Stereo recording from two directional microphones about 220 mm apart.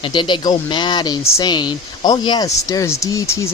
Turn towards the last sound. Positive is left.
turn(degrees=15)  # may be behind; listen again after turning